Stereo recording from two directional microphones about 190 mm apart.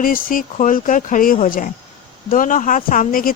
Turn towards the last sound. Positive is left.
turn(degrees=45)  # may be behind; listen again after turning